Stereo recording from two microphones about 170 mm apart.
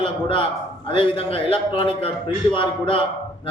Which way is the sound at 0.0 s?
30° left (ahead or behind).